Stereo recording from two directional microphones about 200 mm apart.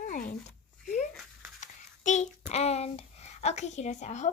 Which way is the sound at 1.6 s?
35° left (ahead or behind).